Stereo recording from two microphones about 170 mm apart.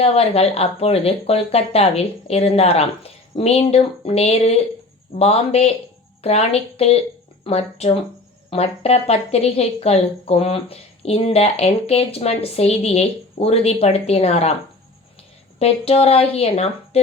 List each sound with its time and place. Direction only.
0.0 s speech: 35° left (ahead or behind)
15.5 s speech: 35° left (ahead or behind)